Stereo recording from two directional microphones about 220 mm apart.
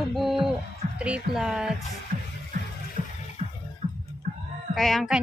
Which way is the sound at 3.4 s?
30° right (ahead or behind).